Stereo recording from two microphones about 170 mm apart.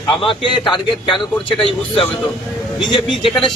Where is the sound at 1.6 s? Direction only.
30° left (ahead or behind).